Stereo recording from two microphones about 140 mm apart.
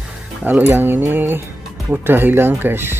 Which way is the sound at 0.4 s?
10° right (ahead or behind).